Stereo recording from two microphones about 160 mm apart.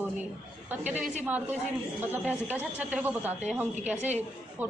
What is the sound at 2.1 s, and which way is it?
Speech, 10° right (ahead or behind).